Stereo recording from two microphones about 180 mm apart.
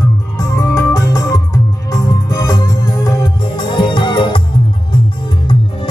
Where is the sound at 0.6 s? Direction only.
20° left (ahead or behind).